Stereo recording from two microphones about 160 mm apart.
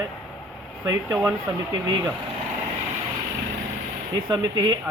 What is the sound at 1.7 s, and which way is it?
Speech, 25° right (ahead or behind).